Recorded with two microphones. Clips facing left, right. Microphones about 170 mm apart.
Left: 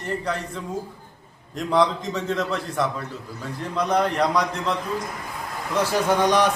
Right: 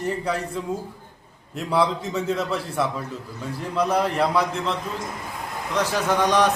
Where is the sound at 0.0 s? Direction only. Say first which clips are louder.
Right 2 dB; 5° right (ahead or behind).